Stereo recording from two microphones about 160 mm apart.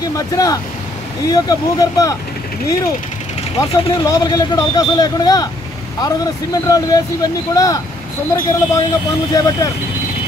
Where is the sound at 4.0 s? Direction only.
20° left (ahead or behind).